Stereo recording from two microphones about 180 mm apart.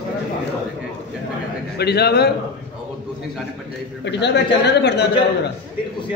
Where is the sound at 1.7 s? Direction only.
65° left (ahead or behind).